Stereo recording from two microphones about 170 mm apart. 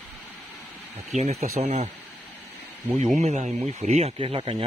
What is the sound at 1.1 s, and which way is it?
Speech, 40° right (ahead or behind).